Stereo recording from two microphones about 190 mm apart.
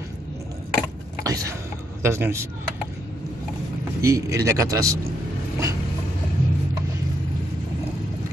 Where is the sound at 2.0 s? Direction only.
15° right (ahead or behind).